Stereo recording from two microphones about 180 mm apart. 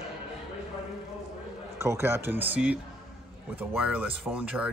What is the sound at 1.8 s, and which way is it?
Speech, 15° right (ahead or behind).